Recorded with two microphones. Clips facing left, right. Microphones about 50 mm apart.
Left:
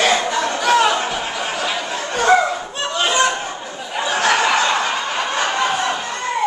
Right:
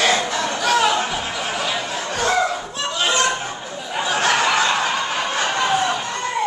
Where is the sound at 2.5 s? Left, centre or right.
Centre.